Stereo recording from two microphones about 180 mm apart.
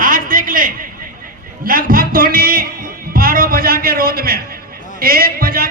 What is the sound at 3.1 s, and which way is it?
Music, 55° right (ahead or behind).